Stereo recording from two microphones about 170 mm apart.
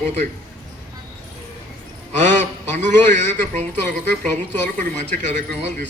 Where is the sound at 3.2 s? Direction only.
45° right (ahead or behind).